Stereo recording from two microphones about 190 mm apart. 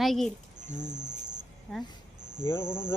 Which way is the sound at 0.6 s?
40° right (ahead or behind).